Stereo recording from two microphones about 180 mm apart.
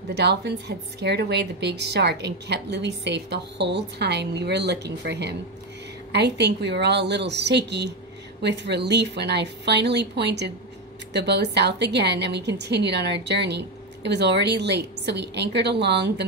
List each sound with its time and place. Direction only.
0.1 s a woman's voice: 70° right (ahead or behind)